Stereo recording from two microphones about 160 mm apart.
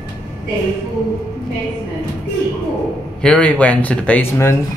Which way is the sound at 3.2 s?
10° left (ahead or behind).